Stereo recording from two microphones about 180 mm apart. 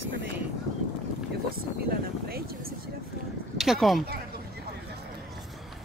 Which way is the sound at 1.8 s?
55° right (ahead or behind).